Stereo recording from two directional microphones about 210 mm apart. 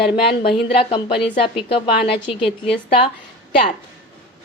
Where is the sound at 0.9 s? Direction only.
25° left (ahead or behind).